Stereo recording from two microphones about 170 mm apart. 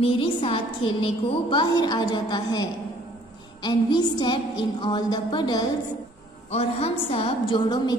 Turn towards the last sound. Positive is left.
turn(degrees=25)  # may be behind; listen again after turning